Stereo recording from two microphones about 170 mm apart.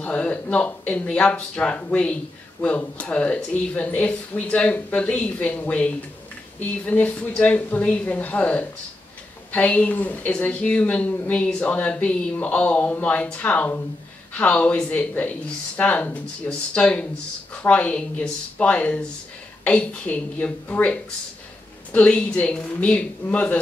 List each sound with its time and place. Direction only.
0.0 s a woman's voice: 10° left (ahead or behind)